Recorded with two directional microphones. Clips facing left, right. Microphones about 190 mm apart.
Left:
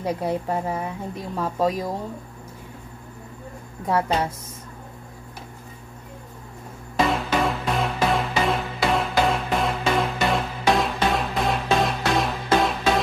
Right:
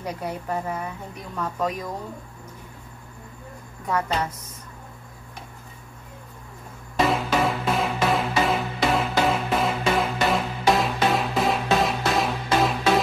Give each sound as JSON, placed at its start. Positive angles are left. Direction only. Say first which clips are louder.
{"t": 0.0, "sound": "speech", "louder": "left 6 dB", "side_deg": 30}
{"t": 3.8, "sound": "speech", "louder": "left 3 dB", "side_deg": 30}
{"t": 7.1, "sound": "music", "louder": "right 2 dB", "side_deg": 0}